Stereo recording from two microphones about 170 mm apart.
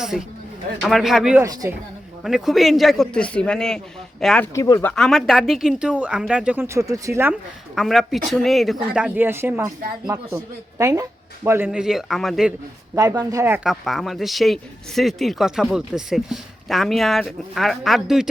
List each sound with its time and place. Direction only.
0.0 s speech: centre (ahead or behind)
1.4 s speech: 20° right (ahead or behind)
2.2 s speech: centre (ahead or behind)
4.5 s speech: 20° left (ahead or behind)
4.9 s speech: centre (ahead or behind); by 7.3 s 15° right (ahead or behind)
7.8 s speech: centre (ahead or behind)
13.0 s speech: 20° right (ahead or behind)
13.7 s speech: centre (ahead or behind)